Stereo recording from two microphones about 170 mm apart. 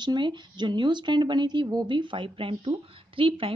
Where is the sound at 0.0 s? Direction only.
25° right (ahead or behind).